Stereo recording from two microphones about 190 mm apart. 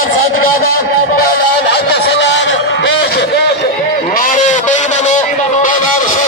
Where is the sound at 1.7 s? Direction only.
65° left (ahead or behind).